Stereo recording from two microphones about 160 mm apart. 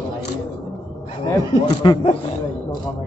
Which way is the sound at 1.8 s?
30° left (ahead or behind).